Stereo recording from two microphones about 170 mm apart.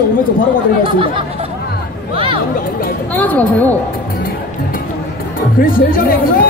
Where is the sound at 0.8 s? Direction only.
30° right (ahead or behind).